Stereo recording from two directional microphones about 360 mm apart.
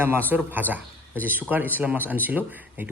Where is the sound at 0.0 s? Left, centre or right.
Centre.